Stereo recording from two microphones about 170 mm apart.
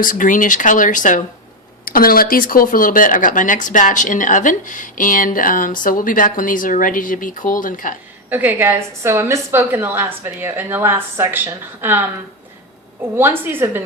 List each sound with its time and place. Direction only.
0.0 s speech: 50° left (ahead or behind)
8.3 s a woman's voice: 10° right (ahead or behind)
13.1 s a woman's voice: 10° right (ahead or behind)